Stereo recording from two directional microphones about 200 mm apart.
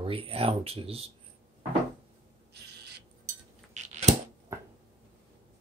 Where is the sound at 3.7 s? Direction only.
35° right (ahead or behind).